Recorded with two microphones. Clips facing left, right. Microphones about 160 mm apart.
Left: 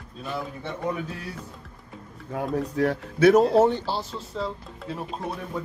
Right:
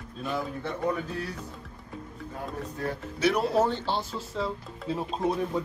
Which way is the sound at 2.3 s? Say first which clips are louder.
Left 11 dB; 80° left.